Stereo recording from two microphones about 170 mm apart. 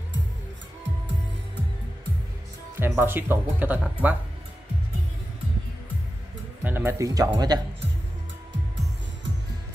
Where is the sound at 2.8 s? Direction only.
15° right (ahead or behind).